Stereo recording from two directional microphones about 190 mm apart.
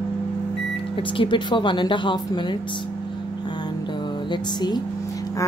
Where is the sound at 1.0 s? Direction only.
25° left (ahead or behind).